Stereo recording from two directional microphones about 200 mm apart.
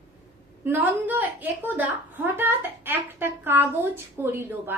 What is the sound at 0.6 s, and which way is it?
A woman's voice, 10° right (ahead or behind).